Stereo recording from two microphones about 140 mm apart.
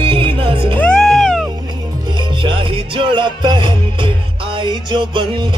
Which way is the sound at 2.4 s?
35° right (ahead or behind).